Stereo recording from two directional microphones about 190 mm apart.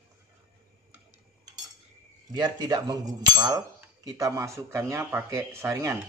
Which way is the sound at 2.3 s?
20° right (ahead or behind).